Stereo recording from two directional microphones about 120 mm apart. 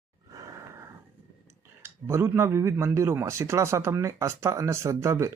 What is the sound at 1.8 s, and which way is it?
Speech, 20° right (ahead or behind).